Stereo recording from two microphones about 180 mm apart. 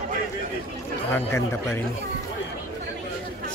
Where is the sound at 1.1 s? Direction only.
15° left (ahead or behind).